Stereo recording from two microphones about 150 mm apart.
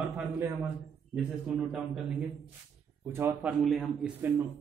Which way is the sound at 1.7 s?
Centre (ahead or behind).